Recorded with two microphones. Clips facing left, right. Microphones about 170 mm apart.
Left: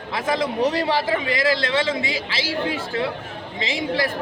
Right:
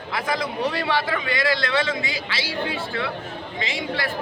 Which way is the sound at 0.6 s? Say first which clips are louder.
Left 3 dB; 35° left (ahead or behind).